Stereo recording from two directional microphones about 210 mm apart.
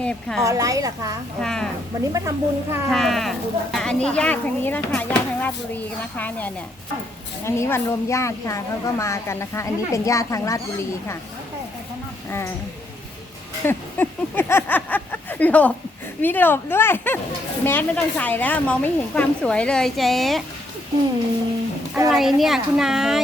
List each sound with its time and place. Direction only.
0.0 s speech: 5° left (ahead or behind)
0.4 s a woman's voice: 15° right (ahead or behind)
1.4 s speech: centre (ahead or behind)
2.1 s a woman's voice: 15° right (ahead or behind)
2.9 s a woman's voice: centre (ahead or behind)
13.7 s a woman's voice: 10° left (ahead or behind)
22.1 s speech: centre (ahead or behind)